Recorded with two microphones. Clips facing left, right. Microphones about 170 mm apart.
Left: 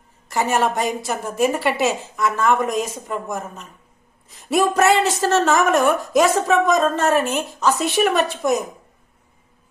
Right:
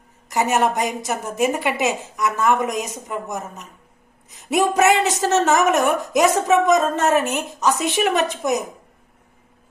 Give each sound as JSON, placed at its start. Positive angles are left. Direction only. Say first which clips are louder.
{"t": 0.3, "sound": "a woman's voice", "louder": "right 1 dB", "side_deg": -20}